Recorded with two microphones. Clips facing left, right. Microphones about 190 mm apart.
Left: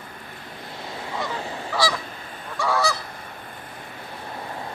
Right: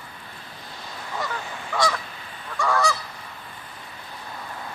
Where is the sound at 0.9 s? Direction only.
25° left (ahead or behind).